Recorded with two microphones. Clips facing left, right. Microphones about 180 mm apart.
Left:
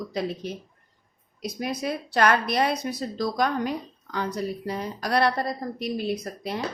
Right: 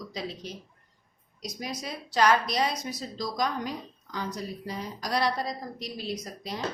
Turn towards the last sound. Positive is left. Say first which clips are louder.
# left 5 dB
turn(degrees=60)  # may be behind; listen again after turning